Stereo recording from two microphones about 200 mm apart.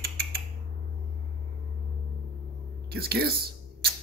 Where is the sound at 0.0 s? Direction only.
50° right (ahead or behind).